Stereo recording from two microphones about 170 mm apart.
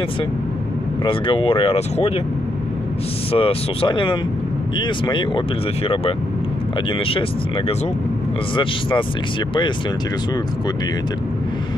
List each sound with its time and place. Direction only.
1.0 s speech: 30° left (ahead or behind)
3.3 s speech: 35° left (ahead or behind)
7.1 s speech: 35° left (ahead or behind)